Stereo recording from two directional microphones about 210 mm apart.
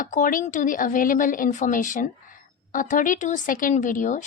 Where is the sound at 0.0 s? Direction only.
40° left (ahead or behind).